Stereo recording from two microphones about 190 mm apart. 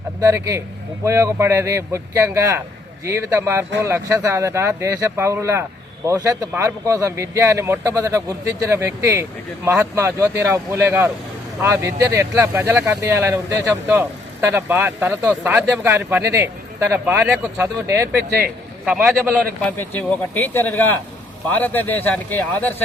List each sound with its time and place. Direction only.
0.2 s speech: 15° right (ahead or behind)
19.6 s speech: 10° left (ahead or behind)